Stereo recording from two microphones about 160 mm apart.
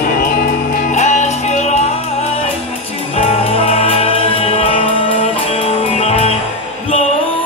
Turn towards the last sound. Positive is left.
turn(degrees=40)  # may be behind; listen again after turning